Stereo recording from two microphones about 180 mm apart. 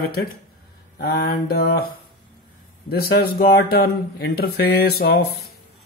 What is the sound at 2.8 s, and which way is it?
Speech, 60° left (ahead or behind).